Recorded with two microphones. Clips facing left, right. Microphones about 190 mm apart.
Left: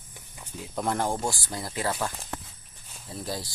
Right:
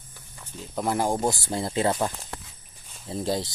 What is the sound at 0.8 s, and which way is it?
Speech, 10° right (ahead or behind).